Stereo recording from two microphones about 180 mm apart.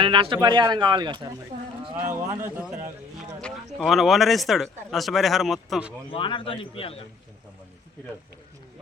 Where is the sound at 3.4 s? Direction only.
Centre (ahead or behind).